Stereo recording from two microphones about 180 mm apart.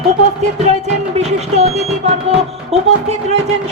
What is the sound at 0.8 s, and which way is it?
Speech, 40° right (ahead or behind).